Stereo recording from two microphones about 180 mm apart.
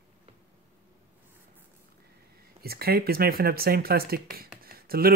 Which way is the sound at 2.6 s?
60° right (ahead or behind).